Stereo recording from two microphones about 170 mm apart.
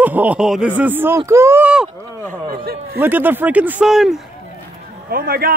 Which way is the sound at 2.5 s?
65° right (ahead or behind).